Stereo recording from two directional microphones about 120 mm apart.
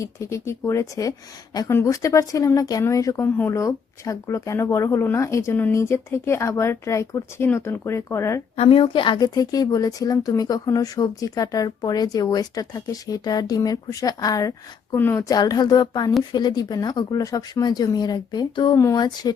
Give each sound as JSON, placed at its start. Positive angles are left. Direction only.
{"t": 0.0, "sound": "speech", "side_deg": 25}
{"t": 8.5, "sound": "a woman's voice", "side_deg": 55}
{"t": 14.9, "sound": "speech", "side_deg": 20}
{"t": 15.3, "sound": "a woman's voice", "side_deg": 35}